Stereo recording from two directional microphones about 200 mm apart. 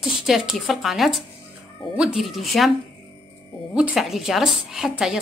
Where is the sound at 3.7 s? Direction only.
5° right (ahead or behind).